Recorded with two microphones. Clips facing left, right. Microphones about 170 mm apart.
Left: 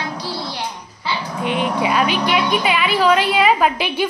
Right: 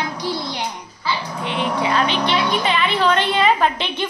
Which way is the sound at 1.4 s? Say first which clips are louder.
Left 3 dB; 15° left (ahead or behind).